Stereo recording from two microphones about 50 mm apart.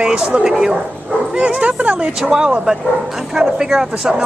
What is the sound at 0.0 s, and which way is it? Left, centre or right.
Speech, centre.